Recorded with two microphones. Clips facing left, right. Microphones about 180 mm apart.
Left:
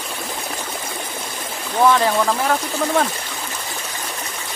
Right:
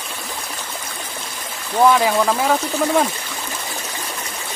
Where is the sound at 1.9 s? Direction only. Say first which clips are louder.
Right 1 dB; 10° right (ahead or behind).